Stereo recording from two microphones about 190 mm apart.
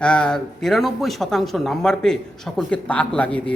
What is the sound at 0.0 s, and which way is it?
A man's voice, 5° left (ahead or behind).